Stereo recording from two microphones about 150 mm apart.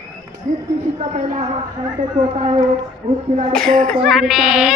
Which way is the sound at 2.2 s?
45° right (ahead or behind).